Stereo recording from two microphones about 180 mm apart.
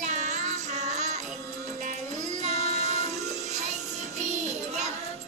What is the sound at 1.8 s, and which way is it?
Music, 40° right (ahead or behind).